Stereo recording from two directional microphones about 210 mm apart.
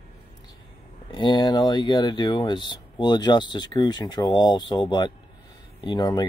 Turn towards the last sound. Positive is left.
turn(degrees=20)  # may be behind; listen again after turning